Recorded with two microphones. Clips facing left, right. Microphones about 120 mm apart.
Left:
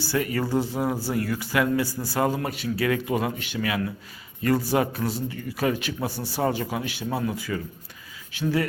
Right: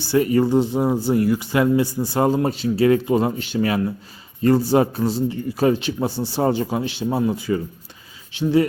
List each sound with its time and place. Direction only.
0.0 s speech: 25° right (ahead or behind)